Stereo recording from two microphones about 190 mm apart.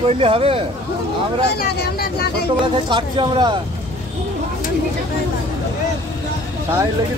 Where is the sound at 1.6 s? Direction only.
55° left (ahead or behind).